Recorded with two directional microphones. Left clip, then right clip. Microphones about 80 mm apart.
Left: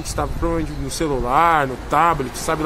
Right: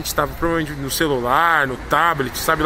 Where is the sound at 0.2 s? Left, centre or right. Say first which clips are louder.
Right 4 dB; centre.